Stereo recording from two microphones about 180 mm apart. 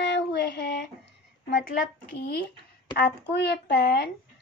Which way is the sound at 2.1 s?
65° left (ahead or behind).